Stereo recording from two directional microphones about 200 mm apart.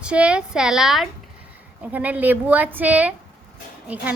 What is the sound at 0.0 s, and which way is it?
A woman's voice, 5° right (ahead or behind).